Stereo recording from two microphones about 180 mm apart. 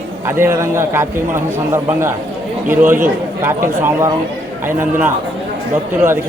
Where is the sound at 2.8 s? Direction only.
45° right (ahead or behind).